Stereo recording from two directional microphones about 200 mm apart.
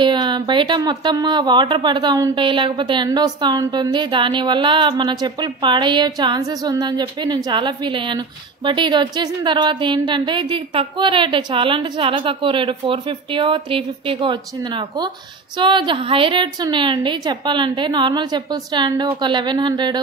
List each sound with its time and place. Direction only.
0.0 s speech: 20° right (ahead or behind)